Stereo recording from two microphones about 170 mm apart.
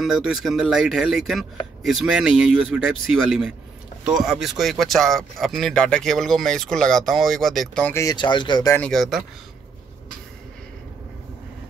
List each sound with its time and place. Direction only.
0.0 s speech: centre (ahead or behind)
7.9 s speech: 20° left (ahead or behind)
8.7 s speech: 5° left (ahead or behind)